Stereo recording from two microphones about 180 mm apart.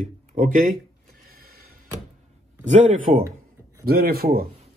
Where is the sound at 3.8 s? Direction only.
60° right (ahead or behind).